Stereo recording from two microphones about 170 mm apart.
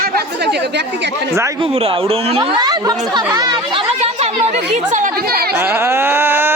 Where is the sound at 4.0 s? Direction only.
40° right (ahead or behind).